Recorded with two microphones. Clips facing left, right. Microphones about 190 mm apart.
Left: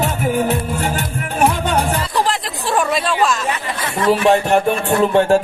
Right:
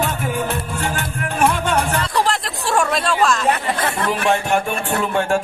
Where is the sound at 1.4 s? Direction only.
35° left (ahead or behind).